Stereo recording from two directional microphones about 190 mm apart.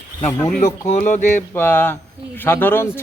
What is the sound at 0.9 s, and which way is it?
Speech, 40° left (ahead or behind).